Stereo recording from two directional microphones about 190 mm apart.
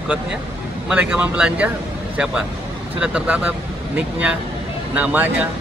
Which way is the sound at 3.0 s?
5° right (ahead or behind).